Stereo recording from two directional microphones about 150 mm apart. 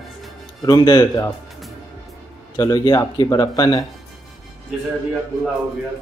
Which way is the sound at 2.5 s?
30° left (ahead or behind).